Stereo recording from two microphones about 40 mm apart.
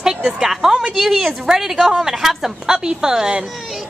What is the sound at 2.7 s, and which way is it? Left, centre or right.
Speech, centre.